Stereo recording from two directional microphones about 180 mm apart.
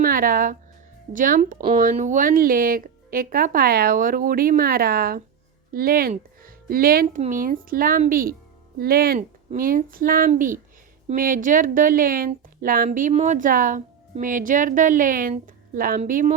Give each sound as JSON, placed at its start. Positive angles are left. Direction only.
{"t": 0.0, "sound": "a woman's voice", "side_deg": -50}